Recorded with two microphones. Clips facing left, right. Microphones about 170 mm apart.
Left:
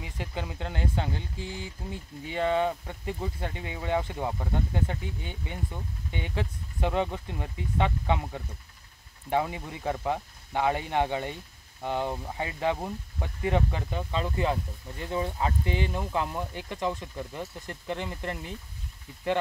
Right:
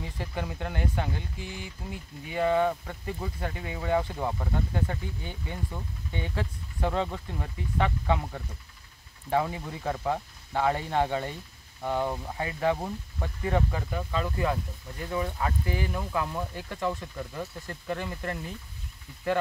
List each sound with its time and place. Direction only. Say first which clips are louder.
0.0 s speech: right 1 dB; 20° left (ahead or behind)